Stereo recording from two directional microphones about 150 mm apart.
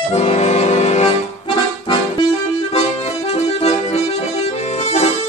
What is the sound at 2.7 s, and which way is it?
Accordion, 45° left (ahead or behind).